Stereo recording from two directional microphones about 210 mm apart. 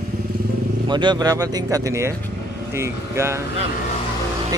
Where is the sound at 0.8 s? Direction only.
20° right (ahead or behind).